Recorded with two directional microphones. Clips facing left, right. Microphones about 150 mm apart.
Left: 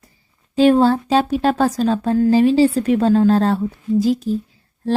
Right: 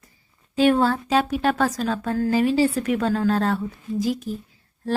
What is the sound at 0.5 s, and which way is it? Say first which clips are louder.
A woman's voice: left 5 dB; 30° left (ahead or behind).